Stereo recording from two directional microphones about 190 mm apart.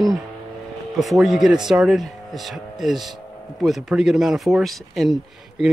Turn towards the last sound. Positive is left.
turn(degrees=0)  # may be behind; listen again after turning